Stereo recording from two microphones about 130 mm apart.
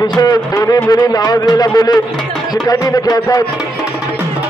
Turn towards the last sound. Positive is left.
turn(degrees=30)  # may be behind; listen again after turning